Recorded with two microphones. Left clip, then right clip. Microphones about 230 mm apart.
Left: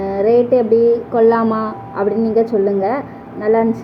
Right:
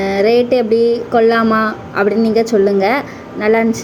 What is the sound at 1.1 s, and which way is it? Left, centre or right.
A woman's voice, right.